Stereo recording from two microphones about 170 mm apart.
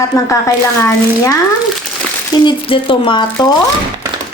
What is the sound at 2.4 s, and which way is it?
Speech, 30° left (ahead or behind).